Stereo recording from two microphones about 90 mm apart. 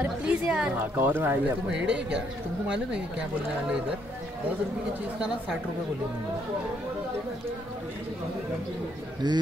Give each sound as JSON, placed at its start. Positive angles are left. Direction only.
{"t": 0.0, "sound": "speech", "side_deg": -15}
{"t": 0.9, "sound": "speech", "side_deg": -20}
{"t": 1.7, "sound": "speech", "side_deg": -10}
{"t": 9.2, "sound": "speech", "side_deg": -55}